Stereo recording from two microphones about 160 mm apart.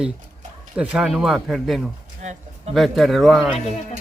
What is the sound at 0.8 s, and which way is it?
Speech, 5° right (ahead or behind).